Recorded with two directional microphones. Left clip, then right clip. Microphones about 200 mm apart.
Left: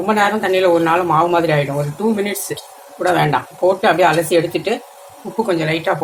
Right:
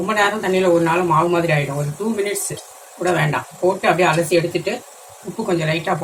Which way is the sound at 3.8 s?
45° left (ahead or behind).